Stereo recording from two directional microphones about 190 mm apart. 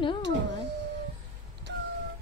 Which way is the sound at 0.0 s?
25° left (ahead or behind).